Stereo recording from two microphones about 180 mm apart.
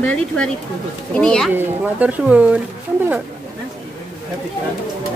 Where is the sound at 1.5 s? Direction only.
10° right (ahead or behind).